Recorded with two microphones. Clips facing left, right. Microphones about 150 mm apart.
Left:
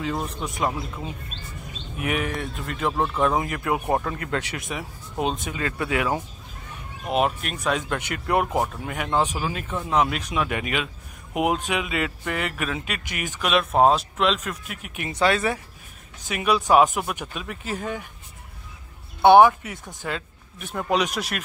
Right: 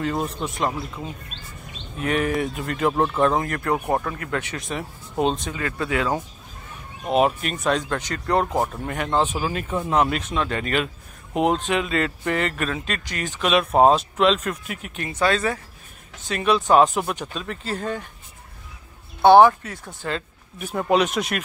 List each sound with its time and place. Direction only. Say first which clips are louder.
0.0 s speech: right 3 dB; centre (ahead or behind)
2.2 s speech: right 6 dB; centre (ahead or behind)
3.9 s speech: even; 20° left (ahead or behind)
5.2 s speech: right 4 dB; 5° left (ahead or behind)
5.5 s speech: right 1 dB; 20° left (ahead or behind)
7.1 s speech: right 3 dB; centre (ahead or behind)
7.9 s speech: right 1 dB; 15° left (ahead or behind)
10.3 s speech: right 2 dB; 10° left (ahead or behind)
13.7 s speech: right 2 dB; centre (ahead or behind)
15.1 s speech: even; 20° left (ahead or behind)
16.3 s speech: right 2 dB; 10° left (ahead or behind)
19.2 s speech: right 1 dB; 15° left (ahead or behind)
20.2 s speech: right 4 dB; 5° right (ahead or behind)